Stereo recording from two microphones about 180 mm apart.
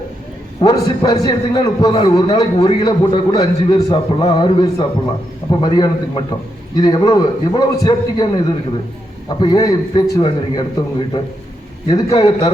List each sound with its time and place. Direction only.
0.6 s a man's voice: 20° left (ahead or behind)
9.4 s a man's voice: 20° left (ahead or behind)